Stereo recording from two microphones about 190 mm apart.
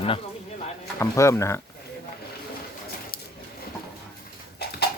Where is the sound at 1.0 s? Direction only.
15° left (ahead or behind).